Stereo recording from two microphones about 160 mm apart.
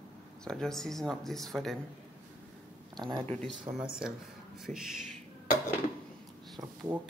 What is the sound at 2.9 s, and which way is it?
Speech, 25° right (ahead or behind).